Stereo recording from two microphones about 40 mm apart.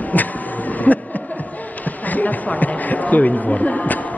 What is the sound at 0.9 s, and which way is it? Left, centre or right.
Speech, left.